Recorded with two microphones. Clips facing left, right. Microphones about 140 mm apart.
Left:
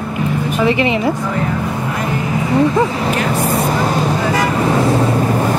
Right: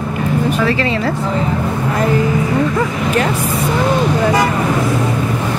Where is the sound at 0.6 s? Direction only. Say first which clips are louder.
Left 2 dB; 15° left (ahead or behind).